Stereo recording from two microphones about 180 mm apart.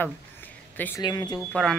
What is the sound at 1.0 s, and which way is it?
Speech, 25° left (ahead or behind).